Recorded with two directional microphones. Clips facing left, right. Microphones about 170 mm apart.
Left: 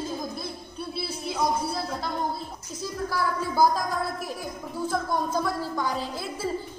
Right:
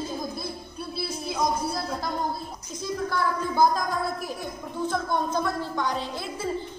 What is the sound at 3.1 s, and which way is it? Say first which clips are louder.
A woman's voice: even; 5° left (ahead or behind).